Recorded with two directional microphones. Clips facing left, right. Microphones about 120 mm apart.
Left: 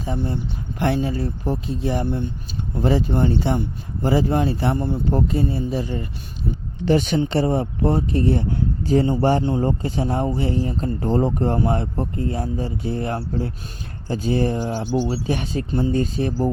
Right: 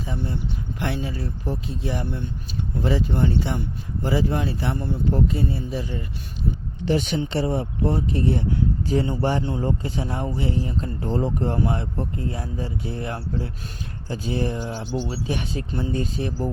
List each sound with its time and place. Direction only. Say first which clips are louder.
0.0 s speech: left 4 dB; 45° left (ahead or behind)
15.7 s speech: left 6 dB; 25° left (ahead or behind)
16.0 s speech: left 5 dB; 40° left (ahead or behind)